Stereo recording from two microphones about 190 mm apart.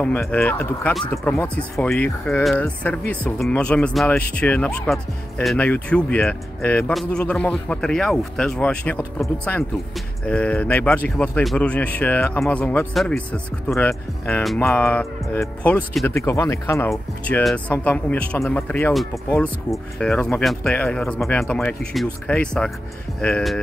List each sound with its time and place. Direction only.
0.0 s speech: 5° left (ahead or behind)
16.2 s speech: 15° left (ahead or behind)
16.9 s speech: centre (ahead or behind)